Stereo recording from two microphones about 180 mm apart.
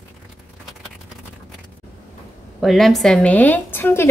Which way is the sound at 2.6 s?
Centre (ahead or behind).